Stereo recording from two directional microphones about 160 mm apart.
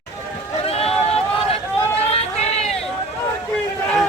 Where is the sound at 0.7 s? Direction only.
40° left (ahead or behind).